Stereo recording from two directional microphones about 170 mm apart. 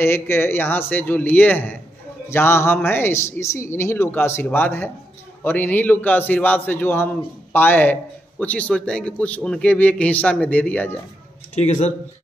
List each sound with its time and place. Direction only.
0.0 s a man's voice: 15° left (ahead or behind)
11.5 s speech: 40° left (ahead or behind)